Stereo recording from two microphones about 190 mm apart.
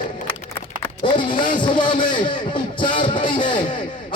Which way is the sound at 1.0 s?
25° left (ahead or behind).